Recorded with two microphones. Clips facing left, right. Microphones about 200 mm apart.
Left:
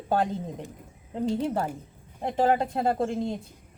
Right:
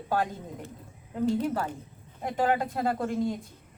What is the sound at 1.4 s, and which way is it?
Speech, 25° left (ahead or behind).